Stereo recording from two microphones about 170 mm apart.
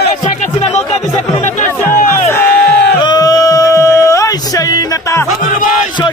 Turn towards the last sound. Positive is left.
turn(degrees=20)  # may be behind; listen again after turning